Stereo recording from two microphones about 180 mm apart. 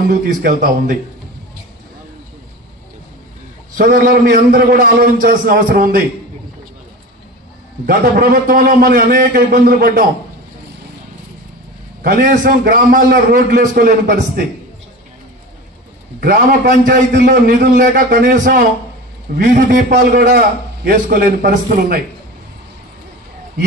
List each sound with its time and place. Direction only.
0.3 s a man's voice: 50° right (ahead or behind)
3.7 s a man's voice: 50° right (ahead or behind)
7.8 s a man's voice: 55° right (ahead or behind)
12.0 s a man's voice: 50° right (ahead or behind)
16.2 s a man's voice: 50° right (ahead or behind)